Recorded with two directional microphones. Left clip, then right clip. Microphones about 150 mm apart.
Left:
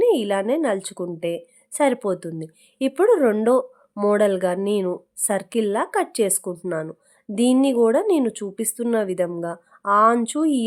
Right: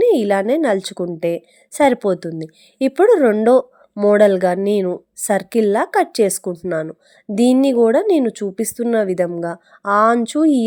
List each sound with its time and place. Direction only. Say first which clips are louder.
0.0 s a woman's voice: right 5 dB; 30° right (ahead or behind)
4.2 s a woman's voice: right 6 dB; 25° right (ahead or behind)
7.6 s a woman's voice: right 3 dB; 25° right (ahead or behind)